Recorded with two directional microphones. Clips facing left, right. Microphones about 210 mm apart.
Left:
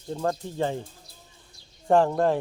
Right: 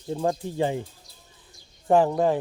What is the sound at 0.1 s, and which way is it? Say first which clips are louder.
Speech: right 2 dB; 15° right (ahead or behind).